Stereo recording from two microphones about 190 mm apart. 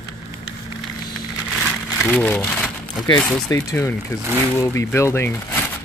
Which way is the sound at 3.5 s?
15° left (ahead or behind).